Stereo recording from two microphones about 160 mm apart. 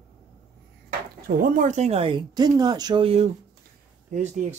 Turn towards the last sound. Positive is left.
turn(degrees=-45)  # may be behind; listen again after turning